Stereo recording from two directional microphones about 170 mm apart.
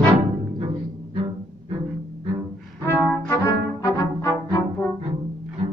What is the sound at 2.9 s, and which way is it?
Brass instrument, 15° left (ahead or behind).